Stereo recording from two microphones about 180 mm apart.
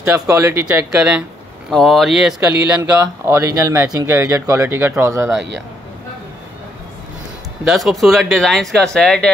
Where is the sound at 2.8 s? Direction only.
20° right (ahead or behind).